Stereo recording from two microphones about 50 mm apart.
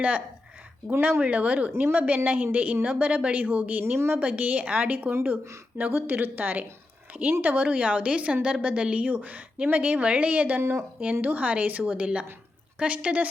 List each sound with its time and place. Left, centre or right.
1.2 s a woman's voice: right
10.6 s speech: right
11.0 s a woman's voice: right